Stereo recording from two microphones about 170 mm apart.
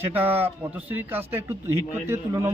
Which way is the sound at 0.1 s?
10° right (ahead or behind).